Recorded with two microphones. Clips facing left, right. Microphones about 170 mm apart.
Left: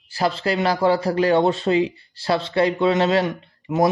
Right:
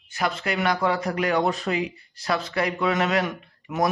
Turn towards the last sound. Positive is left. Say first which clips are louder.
# left 5 dB
turn(degrees=30)  # may be behind; listen again after turning